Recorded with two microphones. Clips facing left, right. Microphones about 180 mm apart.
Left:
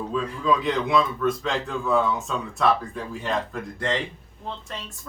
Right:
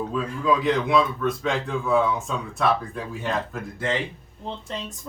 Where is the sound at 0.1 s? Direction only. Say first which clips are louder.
Left 1 dB; 5° right (ahead or behind).